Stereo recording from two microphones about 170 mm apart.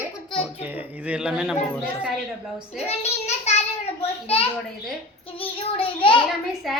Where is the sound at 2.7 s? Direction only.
40° left (ahead or behind).